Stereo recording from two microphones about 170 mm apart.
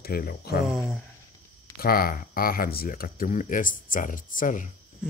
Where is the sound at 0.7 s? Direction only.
Centre (ahead or behind).